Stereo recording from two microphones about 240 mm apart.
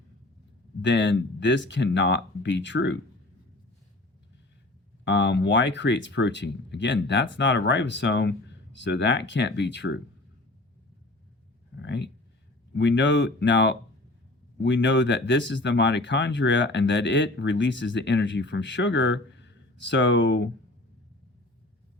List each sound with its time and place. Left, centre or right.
0.8 s speech: left
5.0 s speech: left
11.8 s speech: left